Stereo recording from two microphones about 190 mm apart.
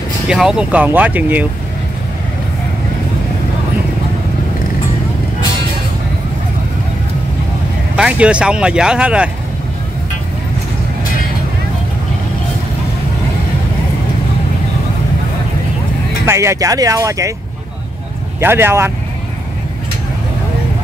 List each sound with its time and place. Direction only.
0.3 s speech: 5° right (ahead or behind)
7.9 s speech: 5° right (ahead or behind)
16.3 s speech: 15° right (ahead or behind)
18.4 s speech: 10° right (ahead or behind)